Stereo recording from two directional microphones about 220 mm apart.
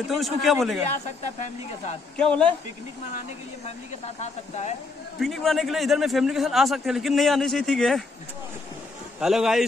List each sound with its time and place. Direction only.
0.0 s a man's voice: centre (ahead or behind)
2.1 s a man's voice: 5° left (ahead or behind)
3.6 s speech: 30° left (ahead or behind)
5.2 s a man's voice: centre (ahead or behind)
9.2 s a man's voice: centre (ahead or behind)